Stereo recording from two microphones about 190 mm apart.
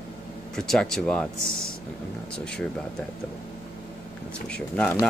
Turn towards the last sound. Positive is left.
turn(degrees=10)  # may be behind; listen again after turning